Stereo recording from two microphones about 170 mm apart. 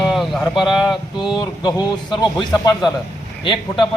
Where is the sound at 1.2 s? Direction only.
25° left (ahead or behind).